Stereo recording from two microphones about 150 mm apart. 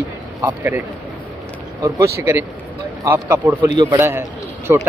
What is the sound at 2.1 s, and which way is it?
Speech, 20° right (ahead or behind).